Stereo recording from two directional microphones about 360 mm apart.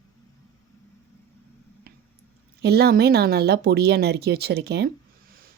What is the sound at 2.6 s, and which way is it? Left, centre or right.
Speech, right.